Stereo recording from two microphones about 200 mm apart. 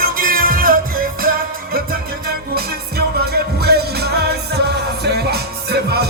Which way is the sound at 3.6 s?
55° right (ahead or behind).